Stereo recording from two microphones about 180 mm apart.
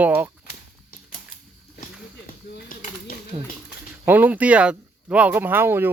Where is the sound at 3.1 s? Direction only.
55° left (ahead or behind).